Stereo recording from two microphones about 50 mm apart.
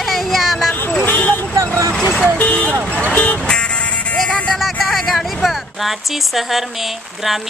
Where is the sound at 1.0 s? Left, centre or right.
Left.